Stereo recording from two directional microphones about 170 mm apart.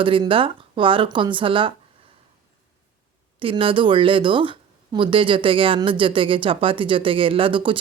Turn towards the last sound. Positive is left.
turn(degrees=-30)  # may be behind; listen again after turning